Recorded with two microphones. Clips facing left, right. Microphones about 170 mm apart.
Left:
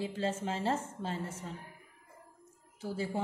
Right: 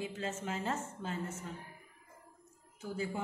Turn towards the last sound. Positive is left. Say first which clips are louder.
# left 3 dB
turn(degrees=35)  # may be behind; listen again after turning